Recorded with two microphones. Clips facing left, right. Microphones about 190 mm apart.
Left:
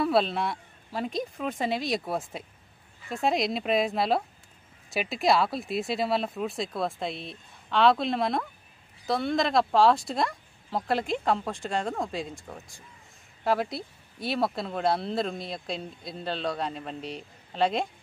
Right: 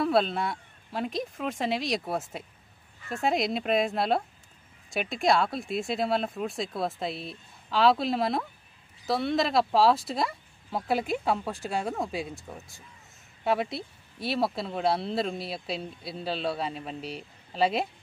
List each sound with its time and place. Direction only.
0.0 s speech: centre (ahead or behind)